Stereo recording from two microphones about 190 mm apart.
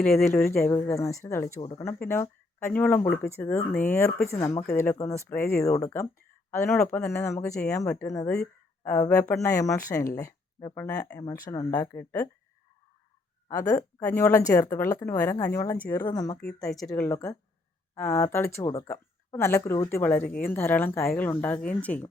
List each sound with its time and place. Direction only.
0.0 s speech: 5° left (ahead or behind)
0.7 s a woman's voice: 15° left (ahead or behind)
13.5 s a woman's voice: 15° left (ahead or behind)
16.6 s speech: centre (ahead or behind)
16.9 s a woman's voice: 15° left (ahead or behind)